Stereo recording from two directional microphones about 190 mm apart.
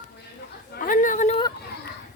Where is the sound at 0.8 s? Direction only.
45° left (ahead or behind).